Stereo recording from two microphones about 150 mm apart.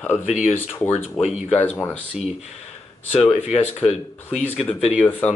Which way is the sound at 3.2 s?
45° left (ahead or behind).